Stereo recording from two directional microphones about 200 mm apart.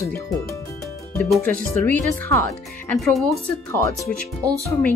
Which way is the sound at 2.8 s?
Centre (ahead or behind).